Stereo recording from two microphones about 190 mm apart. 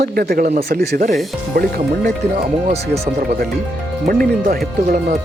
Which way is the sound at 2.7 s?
35° right (ahead or behind).